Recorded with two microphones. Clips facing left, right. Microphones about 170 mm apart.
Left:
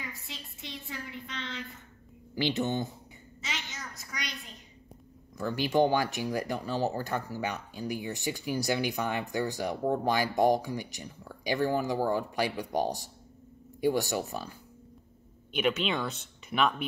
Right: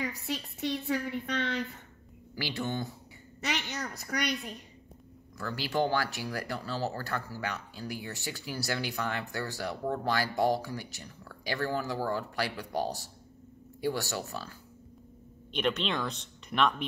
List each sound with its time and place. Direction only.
0.0 s a woman's voice: 65° right (ahead or behind)
2.3 s speech: 20° left (ahead or behind)
3.3 s a sound: 65° right (ahead or behind)
5.4 s speech: 15° left (ahead or behind)
15.5 s speech: 5° left (ahead or behind)